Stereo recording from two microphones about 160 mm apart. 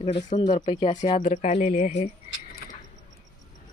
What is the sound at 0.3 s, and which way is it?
Speech, 25° left (ahead or behind).